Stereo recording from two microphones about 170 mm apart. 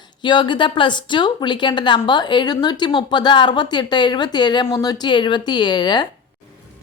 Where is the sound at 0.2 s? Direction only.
25° left (ahead or behind).